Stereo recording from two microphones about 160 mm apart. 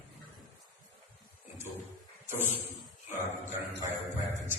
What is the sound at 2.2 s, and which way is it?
Speech, 15° right (ahead or behind).